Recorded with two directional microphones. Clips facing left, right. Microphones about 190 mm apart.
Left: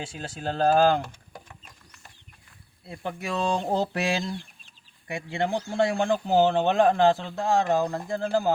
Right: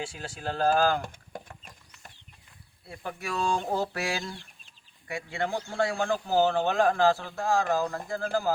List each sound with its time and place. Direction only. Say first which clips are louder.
0.0 s a man's voice: left 2 dB; 25° left (ahead or behind)
1.0 s a sound: right 3 dB; 50° right (ahead or behind)
2.8 s a man's voice: left 4 dB; 25° left (ahead or behind)